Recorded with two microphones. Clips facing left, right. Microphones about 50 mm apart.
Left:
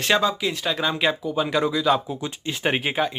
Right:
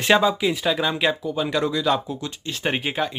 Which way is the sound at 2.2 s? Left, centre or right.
Centre.